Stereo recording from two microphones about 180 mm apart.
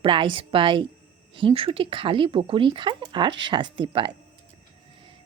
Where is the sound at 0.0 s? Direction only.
30° right (ahead or behind).